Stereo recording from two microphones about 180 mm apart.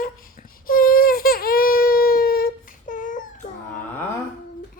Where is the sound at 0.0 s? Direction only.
50° left (ahead or behind).